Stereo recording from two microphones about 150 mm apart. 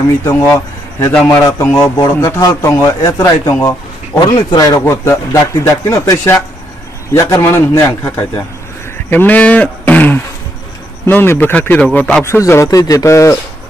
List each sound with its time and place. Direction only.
0.2 s speech: 15° left (ahead or behind)
3.5 s a sound: 20° left (ahead or behind)
4.4 s speech: 25° left (ahead or behind)